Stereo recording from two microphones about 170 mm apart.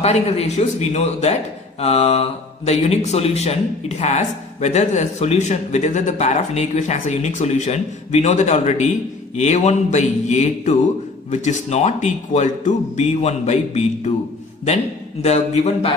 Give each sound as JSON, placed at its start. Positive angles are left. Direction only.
{"t": 0.0, "sound": "speech", "side_deg": 40}
{"t": 15.2, "sound": "speech", "side_deg": 40}